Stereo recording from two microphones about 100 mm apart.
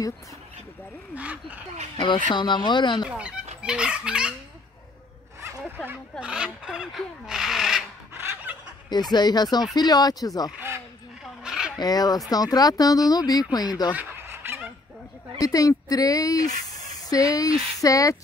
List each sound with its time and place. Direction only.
1.1 s dog: 15° right (ahead or behind)
2.0 s speech: 50° left (ahead or behind)
3.1 s dog: 10° right (ahead or behind)
6.2 s speech: 10° right (ahead or behind)
8.5 s snicker: 15° right (ahead or behind)
8.8 s speech: 45° left (ahead or behind)
11.4 s fowl: 5° right (ahead or behind)
11.8 s speech: 40° left (ahead or behind)
13.9 s fowl: 25° right (ahead or behind)
15.3 s speech: 40° left (ahead or behind)